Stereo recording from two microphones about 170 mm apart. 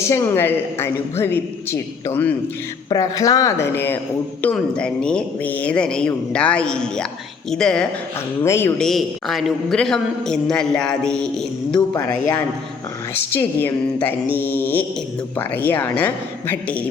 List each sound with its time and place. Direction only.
0.0 s a woman's voice: 15° left (ahead or behind)
8.8 s a woman's voice: centre (ahead or behind)